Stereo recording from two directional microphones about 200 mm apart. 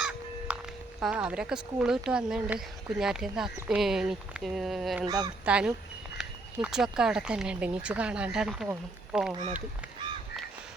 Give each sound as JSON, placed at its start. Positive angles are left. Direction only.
{"t": 0.0, "sound": "speech", "side_deg": -5}
{"t": 5.0, "sound": "speech", "side_deg": -20}
{"t": 5.5, "sound": "speech", "side_deg": -5}